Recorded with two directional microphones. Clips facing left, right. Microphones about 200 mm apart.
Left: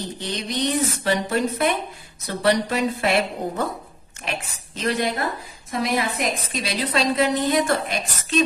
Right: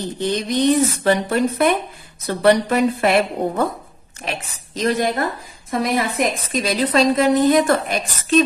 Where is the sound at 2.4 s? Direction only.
55° right (ahead or behind).